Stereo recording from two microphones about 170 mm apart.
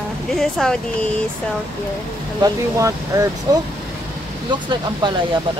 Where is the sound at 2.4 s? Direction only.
25° right (ahead or behind).